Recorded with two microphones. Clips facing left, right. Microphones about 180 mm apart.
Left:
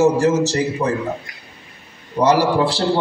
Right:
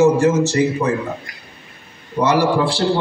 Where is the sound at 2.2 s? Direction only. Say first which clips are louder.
Left 1 dB; 40° left (ahead or behind).